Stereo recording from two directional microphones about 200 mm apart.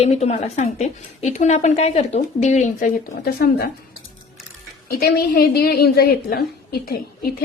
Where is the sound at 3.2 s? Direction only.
50° left (ahead or behind).